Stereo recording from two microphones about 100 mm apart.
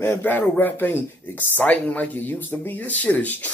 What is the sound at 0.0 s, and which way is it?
Speech, 20° left (ahead or behind).